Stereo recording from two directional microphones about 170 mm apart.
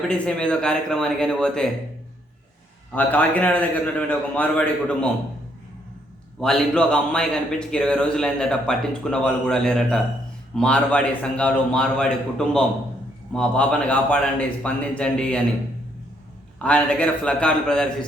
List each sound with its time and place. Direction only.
0.1 s speech: 5° left (ahead or behind)
2.9 s a man's voice: 10° left (ahead or behind)
6.4 s a man's voice: 5° left (ahead or behind)
16.6 s a man's voice: 5° left (ahead or behind)